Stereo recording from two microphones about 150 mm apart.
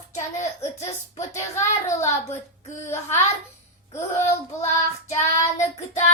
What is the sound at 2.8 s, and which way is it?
Speech, 15° left (ahead or behind).